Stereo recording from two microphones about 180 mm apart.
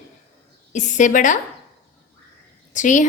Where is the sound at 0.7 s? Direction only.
45° left (ahead or behind).